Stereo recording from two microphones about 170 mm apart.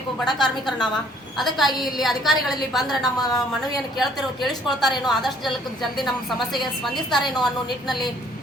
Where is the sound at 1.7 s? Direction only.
25° left (ahead or behind).